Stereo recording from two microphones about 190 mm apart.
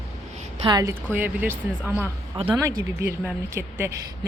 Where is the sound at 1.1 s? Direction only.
10° right (ahead or behind).